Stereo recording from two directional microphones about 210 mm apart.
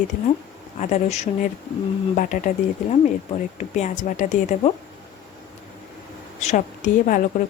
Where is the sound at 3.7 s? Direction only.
35° left (ahead or behind).